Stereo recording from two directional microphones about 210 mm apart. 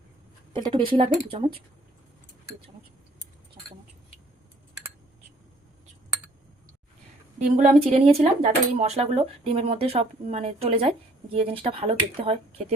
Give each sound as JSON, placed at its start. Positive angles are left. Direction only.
{"t": 0.5, "sound": "speech", "side_deg": -25}
{"t": 7.3, "sound": "a woman's voice", "side_deg": -35}